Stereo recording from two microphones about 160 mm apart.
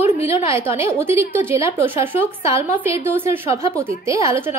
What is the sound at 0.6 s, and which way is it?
A woman's voice, 15° right (ahead or behind).